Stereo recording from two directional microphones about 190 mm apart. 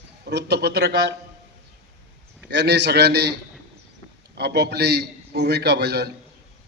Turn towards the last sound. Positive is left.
turn(degrees=-60)  # may be behind; listen again after turning